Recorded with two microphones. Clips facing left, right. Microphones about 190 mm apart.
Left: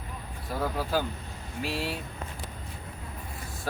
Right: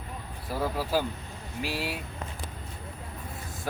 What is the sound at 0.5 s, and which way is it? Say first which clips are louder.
Speech: right 1 dB; 5° right (ahead or behind).